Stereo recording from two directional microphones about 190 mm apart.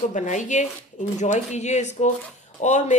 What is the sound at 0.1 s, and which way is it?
Speech, 40° left (ahead or behind).